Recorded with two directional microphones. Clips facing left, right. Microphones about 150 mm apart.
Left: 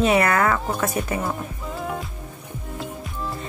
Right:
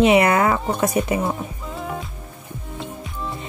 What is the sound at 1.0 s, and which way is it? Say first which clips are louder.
Speech: right 5 dB; centre (ahead or behind).